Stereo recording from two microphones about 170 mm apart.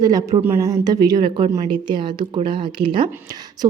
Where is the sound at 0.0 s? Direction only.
20° right (ahead or behind).